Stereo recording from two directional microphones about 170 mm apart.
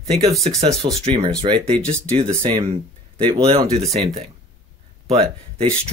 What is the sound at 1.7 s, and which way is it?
Speech, 5° left (ahead or behind).